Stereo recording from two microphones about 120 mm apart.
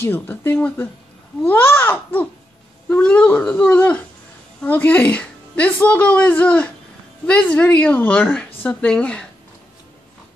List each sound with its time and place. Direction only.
0.0 s a woman's voice: 20° left (ahead or behind)